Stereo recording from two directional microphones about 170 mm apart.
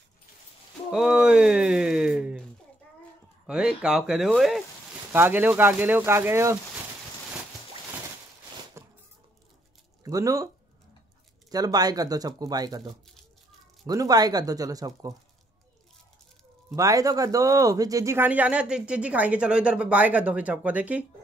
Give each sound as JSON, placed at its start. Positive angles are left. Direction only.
{"t": 0.9, "sound": "a sound", "side_deg": -5}
{"t": 3.4, "sound": "speech", "side_deg": -5}
{"t": 5.1, "sound": "speech", "side_deg": -10}
{"t": 8.8, "sound": "a sound", "side_deg": -15}
{"t": 10.0, "sound": "speech", "side_deg": -20}
{"t": 11.5, "sound": "speech", "side_deg": -20}
{"t": 16.7, "sound": "speech", "side_deg": -20}